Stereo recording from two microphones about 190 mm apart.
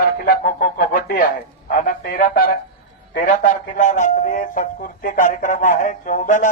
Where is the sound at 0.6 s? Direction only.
50° left (ahead or behind).